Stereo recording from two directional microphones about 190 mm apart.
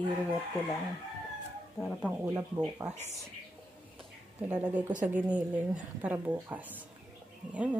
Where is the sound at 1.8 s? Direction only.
5° left (ahead or behind).